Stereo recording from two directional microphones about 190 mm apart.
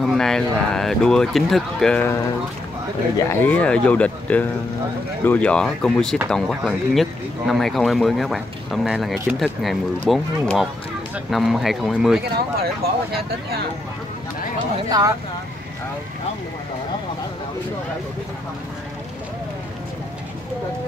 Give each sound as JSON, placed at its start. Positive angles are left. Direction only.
{"t": 0.0, "sound": "speech", "side_deg": 0}
{"t": 12.5, "sound": "speech", "side_deg": -55}